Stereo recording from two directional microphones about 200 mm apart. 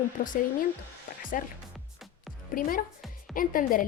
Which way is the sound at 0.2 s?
45° left (ahead or behind).